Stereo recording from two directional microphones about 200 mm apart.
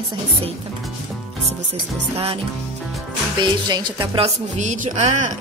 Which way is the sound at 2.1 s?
30° right (ahead or behind).